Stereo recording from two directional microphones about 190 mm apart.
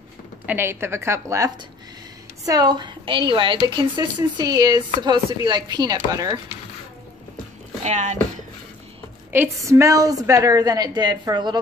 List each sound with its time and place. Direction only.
0.5 s a woman's voice: 10° right (ahead or behind)
7.8 s speech: 40° right (ahead or behind)
9.3 s a woman's voice: 15° right (ahead or behind)